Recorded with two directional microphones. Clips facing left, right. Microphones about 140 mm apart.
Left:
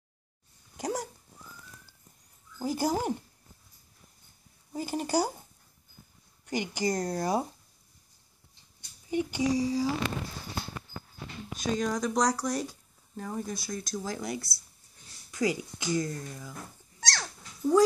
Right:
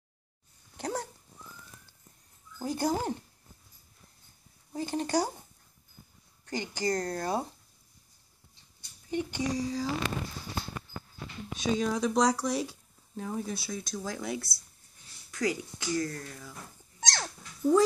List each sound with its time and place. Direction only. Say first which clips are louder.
0.7 s dog: left 2 dB; 10° left (ahead or behind)
2.6 s speech: left 1 dB; 5° left (ahead or behind)
4.7 s speech: left 1 dB; 10° left (ahead or behind)
6.4 s speech: left 2 dB; 15° left (ahead or behind)
9.1 s speech: left 4 dB; 10° left (ahead or behind)
11.5 s speech: right 1 dB; centre (ahead or behind)
17.0 s dog: right 1 dB; 20° right (ahead or behind)
17.6 s speech: even; centre (ahead or behind)